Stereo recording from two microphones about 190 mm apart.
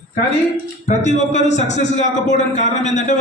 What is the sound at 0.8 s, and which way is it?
A man's voice, 35° left (ahead or behind).